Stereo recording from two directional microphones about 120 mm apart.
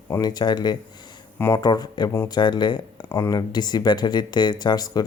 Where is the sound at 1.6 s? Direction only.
35° left (ahead or behind).